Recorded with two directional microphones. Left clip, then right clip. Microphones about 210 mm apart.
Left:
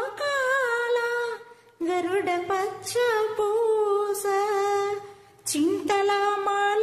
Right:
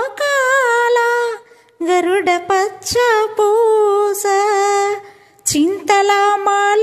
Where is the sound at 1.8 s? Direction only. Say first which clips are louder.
Right 11 dB; 40° right (ahead or behind).